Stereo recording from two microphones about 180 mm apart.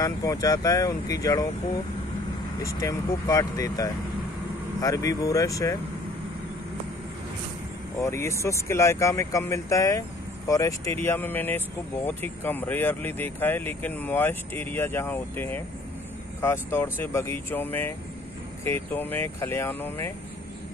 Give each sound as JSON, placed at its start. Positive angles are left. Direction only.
{"t": 0.0, "sound": "speech", "side_deg": 20}
{"t": 2.6, "sound": "speech", "side_deg": 15}
{"t": 8.0, "sound": "speech", "side_deg": 15}